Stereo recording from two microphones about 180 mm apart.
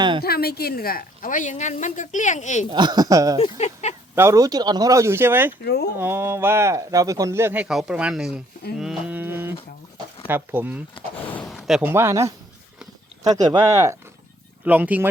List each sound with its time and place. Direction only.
0.2 s a woman's voice: 60° left (ahead or behind); by 2.6 s 40° left (ahead or behind)
2.6 s speech: 25° right (ahead or behind)
3.6 s speech: 40° left (ahead or behind)
4.1 s speech: 15° right (ahead or behind)
5.6 s speech: 65° left (ahead or behind)
6.0 s speech: 15° right (ahead or behind)
8.8 s a sound: 5° right (ahead or behind)
10.2 s speech: 10° right (ahead or behind)
11.3 s speech: 10° left (ahead or behind)
11.5 s speech: 5° right (ahead or behind)
13.3 s speech: 20° right (ahead or behind)